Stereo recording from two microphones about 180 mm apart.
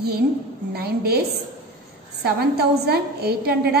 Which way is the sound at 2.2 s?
60° right (ahead or behind).